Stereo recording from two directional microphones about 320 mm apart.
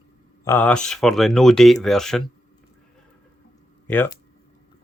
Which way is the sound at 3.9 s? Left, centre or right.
Centre.